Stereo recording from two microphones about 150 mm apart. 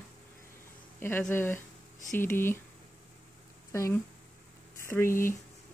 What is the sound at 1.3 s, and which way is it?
Speech, 15° left (ahead or behind).